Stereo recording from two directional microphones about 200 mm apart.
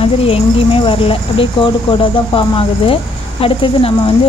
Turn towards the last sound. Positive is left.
turn(degrees=25)  # may be behind; listen again after turning